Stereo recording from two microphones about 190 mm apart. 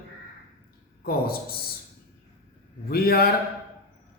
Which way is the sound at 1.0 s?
50° left (ahead or behind).